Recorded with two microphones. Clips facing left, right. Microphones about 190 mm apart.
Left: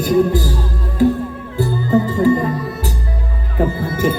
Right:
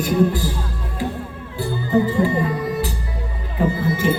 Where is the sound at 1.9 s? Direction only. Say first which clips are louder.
Left 3 dB; 40° left (ahead or behind).